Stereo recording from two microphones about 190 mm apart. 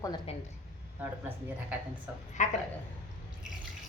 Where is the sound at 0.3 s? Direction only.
30° left (ahead or behind).